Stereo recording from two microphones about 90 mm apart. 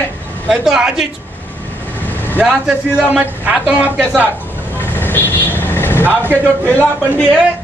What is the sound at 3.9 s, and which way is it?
Speech, 15° right (ahead or behind).